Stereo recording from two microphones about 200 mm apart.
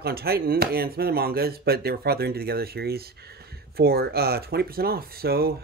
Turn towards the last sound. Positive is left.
turn(degrees=-50)  # may be behind; listen again after turning